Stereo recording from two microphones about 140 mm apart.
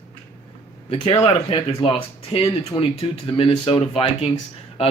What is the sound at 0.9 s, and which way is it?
Speech, 45° left (ahead or behind).